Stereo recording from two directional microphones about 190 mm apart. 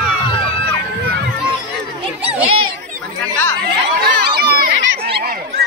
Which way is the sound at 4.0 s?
55° right (ahead or behind).